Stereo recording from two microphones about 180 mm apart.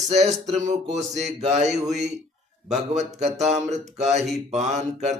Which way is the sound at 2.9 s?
40° right (ahead or behind).